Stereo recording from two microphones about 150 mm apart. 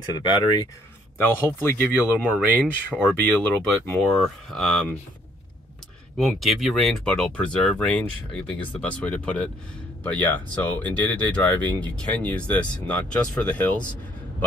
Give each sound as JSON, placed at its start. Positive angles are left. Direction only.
{"t": 0.0, "sound": "speech", "side_deg": 30}
{"t": 1.1, "sound": "speech", "side_deg": 15}
{"t": 2.0, "sound": "speech", "side_deg": -10}
{"t": 3.1, "sound": "speech", "side_deg": 10}
{"t": 6.1, "sound": "speech", "side_deg": 0}